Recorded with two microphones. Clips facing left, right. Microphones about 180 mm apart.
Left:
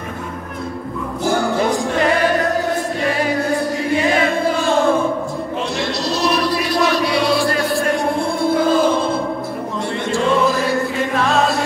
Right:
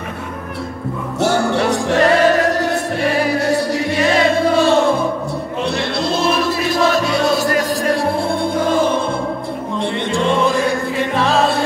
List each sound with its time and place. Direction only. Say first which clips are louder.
1.2 s music: right 2 dB; 75° right (ahead or behind)
5.8 s music: right 1 dB; 55° right (ahead or behind)